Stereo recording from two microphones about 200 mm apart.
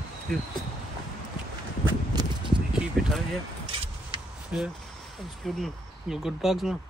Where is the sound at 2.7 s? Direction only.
5° right (ahead or behind).